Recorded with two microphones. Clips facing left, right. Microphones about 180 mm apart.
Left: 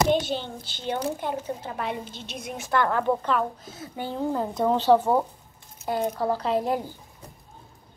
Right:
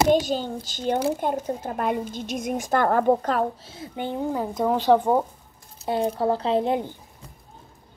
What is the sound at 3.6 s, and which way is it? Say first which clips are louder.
Speech: right 3 dB; 25° right (ahead or behind).